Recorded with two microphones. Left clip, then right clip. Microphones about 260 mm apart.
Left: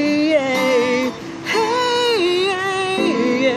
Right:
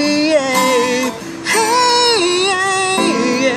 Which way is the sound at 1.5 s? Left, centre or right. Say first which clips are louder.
Right 5 dB; centre.